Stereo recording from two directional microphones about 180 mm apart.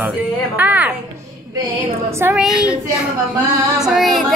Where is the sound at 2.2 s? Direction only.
10° right (ahead or behind).